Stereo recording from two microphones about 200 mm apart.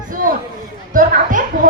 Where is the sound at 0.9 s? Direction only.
40° right (ahead or behind).